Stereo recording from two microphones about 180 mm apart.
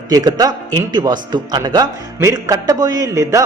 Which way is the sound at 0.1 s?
20° right (ahead or behind).